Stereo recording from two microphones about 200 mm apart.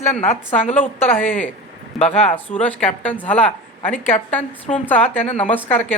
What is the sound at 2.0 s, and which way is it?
Speech, 30° left (ahead or behind).